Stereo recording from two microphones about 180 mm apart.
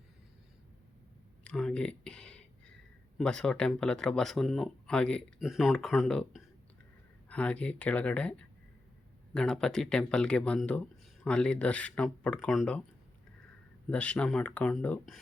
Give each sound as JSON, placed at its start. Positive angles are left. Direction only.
{"t": 1.5, "sound": "a sound", "side_deg": 5}
{"t": 3.2, "sound": "speech", "side_deg": 5}
{"t": 13.9, "sound": "speech", "side_deg": 5}